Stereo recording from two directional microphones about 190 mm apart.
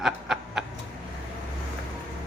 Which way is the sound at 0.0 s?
Centre (ahead or behind).